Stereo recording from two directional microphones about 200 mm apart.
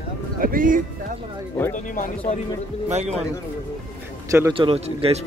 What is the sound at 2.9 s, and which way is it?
Speech, 35° right (ahead or behind).